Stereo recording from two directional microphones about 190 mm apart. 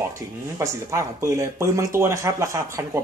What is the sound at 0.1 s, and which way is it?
Speech, 15° right (ahead or behind).